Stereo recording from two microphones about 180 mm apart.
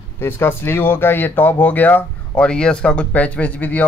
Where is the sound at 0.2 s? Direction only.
10° left (ahead or behind).